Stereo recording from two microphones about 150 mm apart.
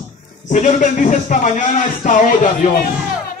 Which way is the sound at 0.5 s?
55° left (ahead or behind).